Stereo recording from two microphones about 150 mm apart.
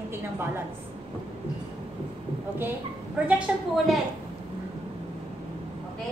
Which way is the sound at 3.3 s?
5° right (ahead or behind).